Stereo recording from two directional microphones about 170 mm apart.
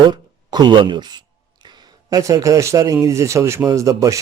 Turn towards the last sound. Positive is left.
turn(degrees=-20)  # may be behind; listen again after turning